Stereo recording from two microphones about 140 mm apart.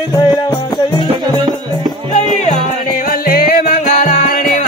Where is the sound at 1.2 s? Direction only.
30° right (ahead or behind).